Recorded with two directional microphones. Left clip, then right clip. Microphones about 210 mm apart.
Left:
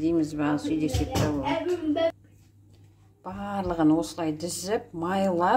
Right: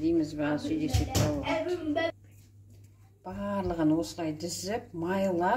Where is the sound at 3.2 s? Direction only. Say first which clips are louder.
Left 2 dB; 40° left (ahead or behind).